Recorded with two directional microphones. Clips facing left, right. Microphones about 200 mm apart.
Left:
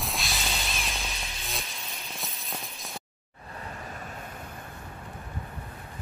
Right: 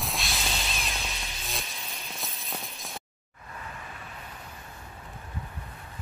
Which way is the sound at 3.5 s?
45° left (ahead or behind).